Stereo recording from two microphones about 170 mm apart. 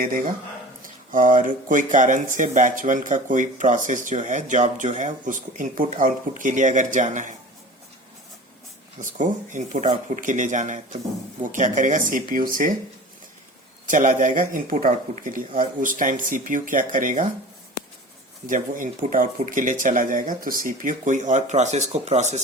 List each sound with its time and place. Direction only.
0.0 s speech: 55° right (ahead or behind)
9.0 s speech: 50° right (ahead or behind)
13.8 s speech: 50° right (ahead or behind)
18.4 s speech: 50° right (ahead or behind)